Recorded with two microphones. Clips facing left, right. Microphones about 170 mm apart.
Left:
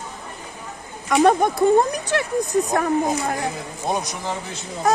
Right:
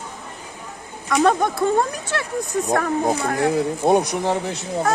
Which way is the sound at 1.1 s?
20° left (ahead or behind).